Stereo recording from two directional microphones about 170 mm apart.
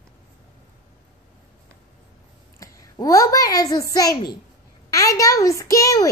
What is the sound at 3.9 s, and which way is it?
Child singing, 20° left (ahead or behind).